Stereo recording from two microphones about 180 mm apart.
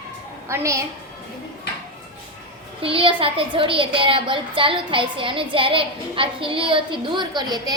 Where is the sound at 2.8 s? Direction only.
30° right (ahead or behind).